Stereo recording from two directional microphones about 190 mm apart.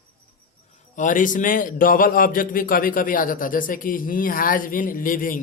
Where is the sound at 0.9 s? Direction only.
45° left (ahead or behind).